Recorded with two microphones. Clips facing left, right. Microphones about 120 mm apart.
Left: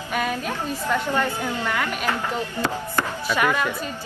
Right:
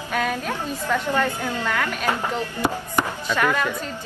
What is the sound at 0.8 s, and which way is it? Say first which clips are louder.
A woman's voice: right 1 dB; 15° left (ahead or behind).